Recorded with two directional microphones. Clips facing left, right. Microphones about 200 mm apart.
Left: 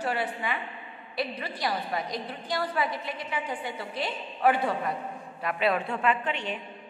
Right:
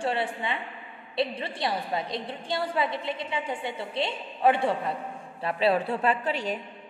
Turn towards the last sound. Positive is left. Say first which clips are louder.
# right 1 dB
turn(degrees=-40)  # may be behind; listen again after turning